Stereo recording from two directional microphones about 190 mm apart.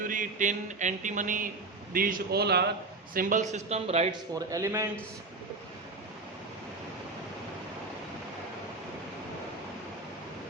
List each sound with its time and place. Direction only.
0.1 s a sound: 45° right (ahead or behind)
1.9 s a man's voice: 45° right (ahead or behind)
3.2 s a man's voice: 45° right (ahead or behind)
4.4 s a man's voice: 15° right (ahead or behind)